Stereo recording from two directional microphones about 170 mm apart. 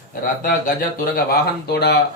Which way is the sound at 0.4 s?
60° left (ahead or behind).